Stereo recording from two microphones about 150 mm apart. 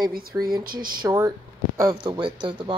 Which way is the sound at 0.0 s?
80° right.